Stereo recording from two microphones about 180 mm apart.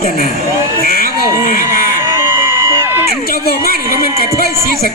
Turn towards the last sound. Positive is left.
turn(degrees=55)  # may be behind; listen again after turning